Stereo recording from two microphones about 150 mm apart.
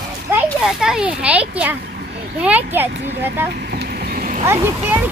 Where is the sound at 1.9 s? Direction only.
90° right.